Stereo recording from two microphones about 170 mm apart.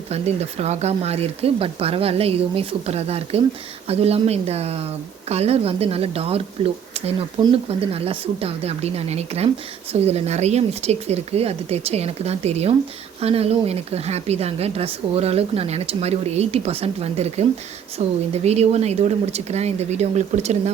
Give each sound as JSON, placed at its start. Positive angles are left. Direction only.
{"t": 0.1, "sound": "speech", "side_deg": -40}